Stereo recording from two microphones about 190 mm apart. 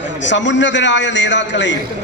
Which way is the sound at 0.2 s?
70° left (ahead or behind).